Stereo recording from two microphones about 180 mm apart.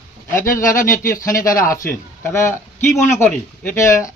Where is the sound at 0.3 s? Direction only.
15° left (ahead or behind).